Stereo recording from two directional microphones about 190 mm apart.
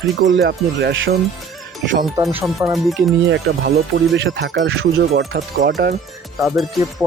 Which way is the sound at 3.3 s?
55° right (ahead or behind).